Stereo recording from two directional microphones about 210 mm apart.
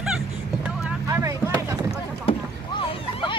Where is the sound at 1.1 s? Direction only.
15° right (ahead or behind).